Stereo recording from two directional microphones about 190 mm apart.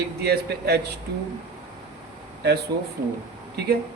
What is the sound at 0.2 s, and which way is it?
Speech, 55° right (ahead or behind).